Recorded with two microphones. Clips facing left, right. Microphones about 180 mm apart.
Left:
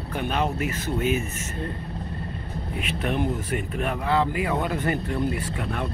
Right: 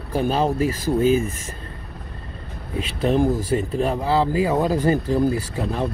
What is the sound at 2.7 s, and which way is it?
Speech, 30° right (ahead or behind).